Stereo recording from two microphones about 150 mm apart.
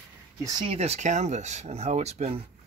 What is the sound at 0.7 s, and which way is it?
Speech, 45° right (ahead or behind).